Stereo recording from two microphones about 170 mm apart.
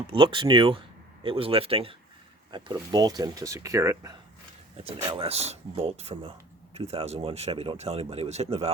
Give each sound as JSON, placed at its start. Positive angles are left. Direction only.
{"t": 0.1, "sound": "speech", "side_deg": -30}
{"t": 4.8, "sound": "speech", "side_deg": -35}